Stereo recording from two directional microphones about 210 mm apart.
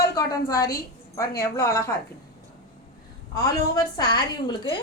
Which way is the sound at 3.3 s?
15° left (ahead or behind).